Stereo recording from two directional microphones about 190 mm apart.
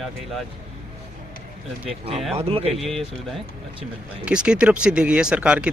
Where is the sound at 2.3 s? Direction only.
30° right (ahead or behind).